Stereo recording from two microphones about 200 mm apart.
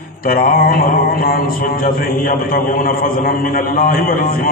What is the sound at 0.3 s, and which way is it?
Mantra, 45° left (ahead or behind).